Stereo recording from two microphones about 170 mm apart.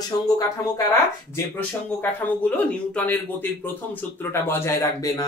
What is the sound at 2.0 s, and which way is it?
Speech, 10° left (ahead or behind).